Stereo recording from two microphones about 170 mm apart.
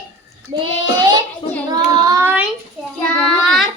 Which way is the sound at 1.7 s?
20° right (ahead or behind).